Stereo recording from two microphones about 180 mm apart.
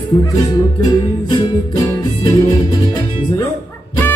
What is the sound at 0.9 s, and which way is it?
Music, 20° left (ahead or behind).